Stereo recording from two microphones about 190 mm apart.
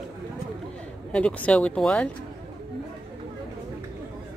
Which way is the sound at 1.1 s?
5° left (ahead or behind).